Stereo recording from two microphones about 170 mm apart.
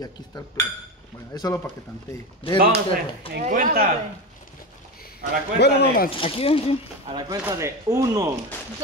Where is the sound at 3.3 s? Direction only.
50° right (ahead or behind).